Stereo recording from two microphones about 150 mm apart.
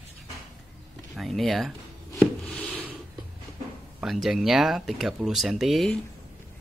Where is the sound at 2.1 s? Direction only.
10° left (ahead or behind).